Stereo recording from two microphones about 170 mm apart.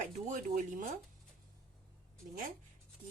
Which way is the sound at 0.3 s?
50° right (ahead or behind).